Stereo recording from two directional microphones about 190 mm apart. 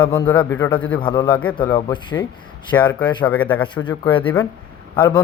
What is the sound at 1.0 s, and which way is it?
A man's voice, 25° left (ahead or behind).